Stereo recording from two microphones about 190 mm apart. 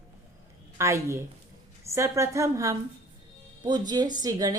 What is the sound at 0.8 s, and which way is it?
A woman's voice, 15° right (ahead or behind).